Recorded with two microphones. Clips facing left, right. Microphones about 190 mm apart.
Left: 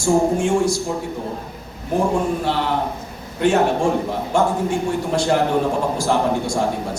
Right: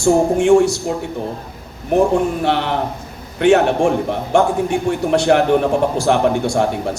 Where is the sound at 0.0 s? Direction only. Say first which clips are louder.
Right 3 dB; 70° right (ahead or behind).